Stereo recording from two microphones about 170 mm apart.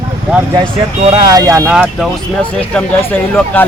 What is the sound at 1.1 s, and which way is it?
Speech, 20° right (ahead or behind).